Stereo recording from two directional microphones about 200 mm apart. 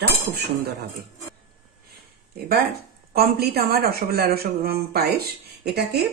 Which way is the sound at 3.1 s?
50° right (ahead or behind).